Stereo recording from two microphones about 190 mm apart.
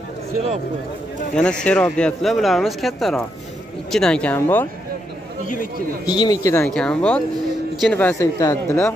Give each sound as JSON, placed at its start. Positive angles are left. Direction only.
{"t": 1.3, "sound": "speech", "side_deg": 5}
{"t": 6.0, "sound": "speech", "side_deg": 20}
{"t": 6.7, "sound": "speech", "side_deg": 5}